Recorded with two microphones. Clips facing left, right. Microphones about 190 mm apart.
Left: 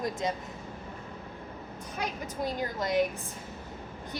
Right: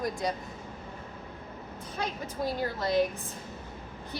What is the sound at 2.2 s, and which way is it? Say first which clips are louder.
Speech: right 2 dB; 20° left (ahead or behind).